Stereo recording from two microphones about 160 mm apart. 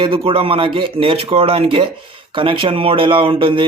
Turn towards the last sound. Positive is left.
turn(degrees=-35)  # may be behind; listen again after turning